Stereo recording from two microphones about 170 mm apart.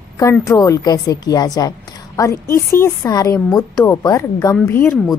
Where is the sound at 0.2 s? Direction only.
20° left (ahead or behind).